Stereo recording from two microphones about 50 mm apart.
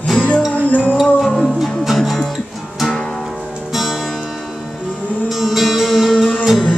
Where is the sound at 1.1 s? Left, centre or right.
Centre.